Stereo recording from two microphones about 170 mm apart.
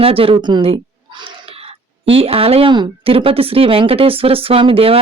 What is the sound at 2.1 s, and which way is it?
Speech, 35° right (ahead or behind).